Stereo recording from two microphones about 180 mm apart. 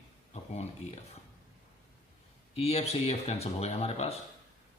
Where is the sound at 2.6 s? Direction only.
35° left (ahead or behind).